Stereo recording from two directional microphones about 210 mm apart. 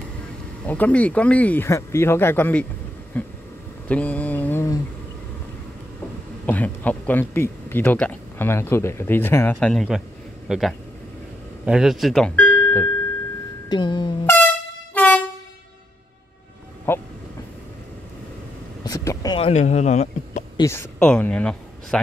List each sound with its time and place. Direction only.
0.7 s speech: 5° left (ahead or behind)
3.9 s mantra: 5° left (ahead or behind)
6.4 s speech: 5° left (ahead or behind)
13.7 s music: 20° left (ahead or behind)
15.0 s train: 5° left (ahead or behind)
16.9 s train: 10° left (ahead or behind)
18.9 s a sound: 15° left (ahead or behind); by 20.4 s 35° left (ahead or behind)
20.5 s a man's voice: 15° left (ahead or behind)